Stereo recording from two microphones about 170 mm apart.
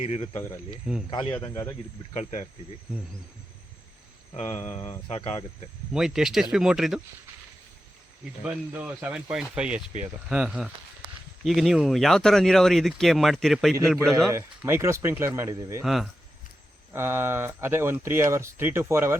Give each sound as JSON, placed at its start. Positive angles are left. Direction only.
{"t": 0.0, "sound": "speech", "side_deg": 35}
{"t": 1.4, "sound": "speech", "side_deg": 15}
{"t": 2.1, "sound": "speech", "side_deg": 40}
{"t": 4.4, "sound": "speech", "side_deg": 40}
{"t": 5.9, "sound": "speech", "side_deg": -5}
{"t": 8.4, "sound": "speech", "side_deg": -10}
{"t": 14.3, "sound": "speech", "side_deg": -15}
{"t": 15.8, "sound": "speech", "side_deg": 0}
{"t": 16.9, "sound": "speech", "side_deg": -15}